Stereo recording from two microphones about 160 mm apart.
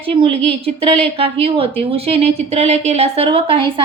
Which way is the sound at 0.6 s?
35° right (ahead or behind).